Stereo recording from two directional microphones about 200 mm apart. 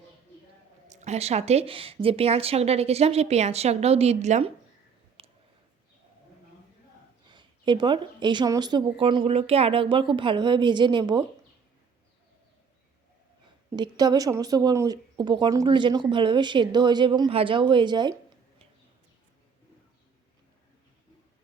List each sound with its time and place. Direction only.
0.9 s speech: 35° right (ahead or behind)
5.2 s a sound: 30° right (ahead or behind)
7.3 s speech: 25° right (ahead or behind)
13.7 s speech: 20° right (ahead or behind)